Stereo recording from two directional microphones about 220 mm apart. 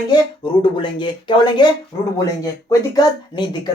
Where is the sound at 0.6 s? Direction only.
20° left (ahead or behind).